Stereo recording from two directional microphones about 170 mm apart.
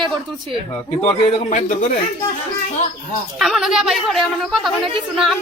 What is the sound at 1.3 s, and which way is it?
Speech, 45° left (ahead or behind).